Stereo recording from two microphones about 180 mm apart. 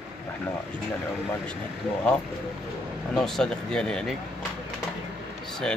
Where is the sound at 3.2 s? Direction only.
Centre (ahead or behind).